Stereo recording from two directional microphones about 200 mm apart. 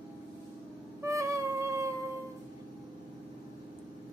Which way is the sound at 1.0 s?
15° right (ahead or behind).